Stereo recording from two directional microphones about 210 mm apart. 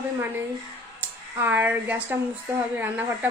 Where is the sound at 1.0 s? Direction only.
10° right (ahead or behind).